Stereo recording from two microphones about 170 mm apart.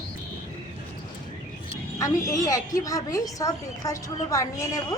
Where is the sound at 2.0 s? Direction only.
20° left (ahead or behind).